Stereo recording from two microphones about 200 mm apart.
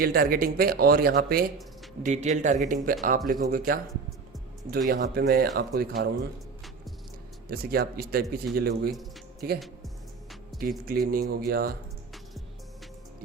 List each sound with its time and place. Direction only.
0.0 s speech: 50° right (ahead or behind)
2.0 s speech: 40° right (ahead or behind)
4.9 s speech: 50° right (ahead or behind)
7.4 s speech: 50° right (ahead or behind)
10.6 s speech: 45° right (ahead or behind)